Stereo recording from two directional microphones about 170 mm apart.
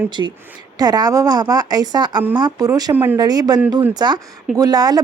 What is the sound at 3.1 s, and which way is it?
Speech, 20° right (ahead or behind).